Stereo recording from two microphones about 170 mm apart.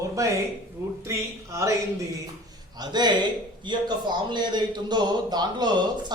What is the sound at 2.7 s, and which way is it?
A man's voice, 25° right (ahead or behind).